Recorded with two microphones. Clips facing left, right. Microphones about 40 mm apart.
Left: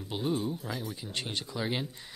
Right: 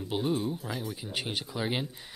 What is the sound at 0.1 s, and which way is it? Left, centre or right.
Speech, centre.